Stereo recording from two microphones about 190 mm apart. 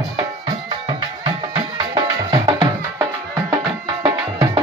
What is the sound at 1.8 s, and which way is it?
Music, 20° right (ahead or behind).